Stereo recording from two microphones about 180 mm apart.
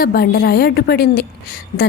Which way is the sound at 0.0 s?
60° left (ahead or behind).